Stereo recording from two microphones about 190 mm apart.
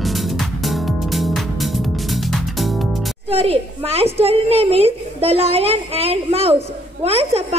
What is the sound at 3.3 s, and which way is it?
A woman's voice, 30° right (ahead or behind).